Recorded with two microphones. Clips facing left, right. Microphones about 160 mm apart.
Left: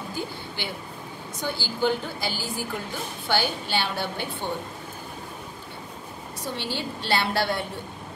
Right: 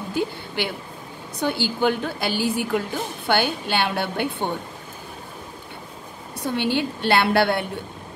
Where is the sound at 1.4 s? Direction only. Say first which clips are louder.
Right 5 dB; 60° right (ahead or behind).